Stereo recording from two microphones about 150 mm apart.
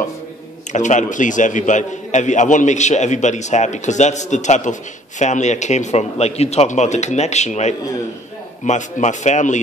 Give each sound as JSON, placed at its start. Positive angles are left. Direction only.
{"t": 0.7, "sound": "a man's voice", "side_deg": 55}